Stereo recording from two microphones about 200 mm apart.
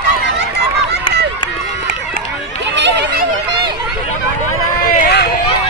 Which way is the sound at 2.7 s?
60° right (ahead or behind).